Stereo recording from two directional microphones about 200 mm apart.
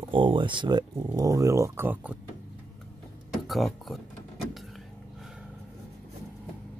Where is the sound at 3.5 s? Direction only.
Centre (ahead or behind).